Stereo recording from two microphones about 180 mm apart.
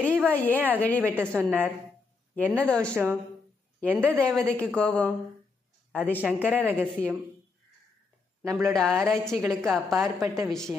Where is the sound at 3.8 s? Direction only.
10° right (ahead or behind).